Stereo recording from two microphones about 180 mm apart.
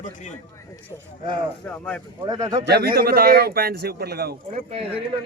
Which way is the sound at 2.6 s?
60° right (ahead or behind).